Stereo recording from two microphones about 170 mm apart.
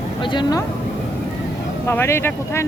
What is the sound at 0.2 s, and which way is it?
Speech, 25° left (ahead or behind).